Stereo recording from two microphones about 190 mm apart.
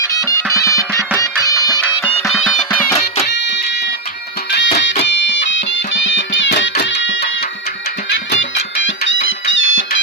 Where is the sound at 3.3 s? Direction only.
65° left (ahead or behind); by 9.8 s 90° left.